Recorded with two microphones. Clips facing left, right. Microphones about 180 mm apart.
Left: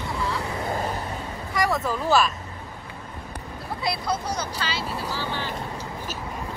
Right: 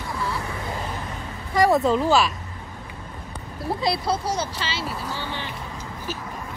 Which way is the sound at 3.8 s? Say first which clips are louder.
Right 2 dB; 30° right (ahead or behind).